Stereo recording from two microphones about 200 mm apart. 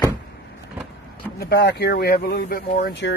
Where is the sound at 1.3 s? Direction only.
50° left (ahead or behind).